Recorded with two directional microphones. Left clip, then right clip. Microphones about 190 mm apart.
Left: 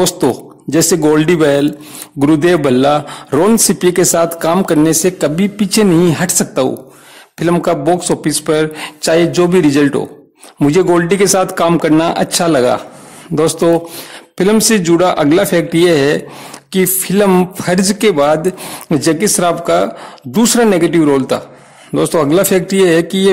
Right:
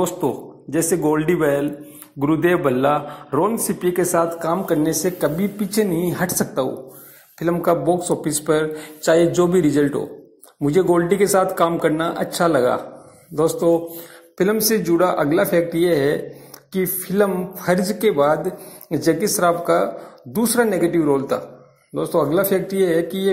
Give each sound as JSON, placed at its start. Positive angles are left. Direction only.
{"t": 0.0, "sound": "a man's voice", "side_deg": 45}
{"t": 14.3, "sound": "a man's voice", "side_deg": 30}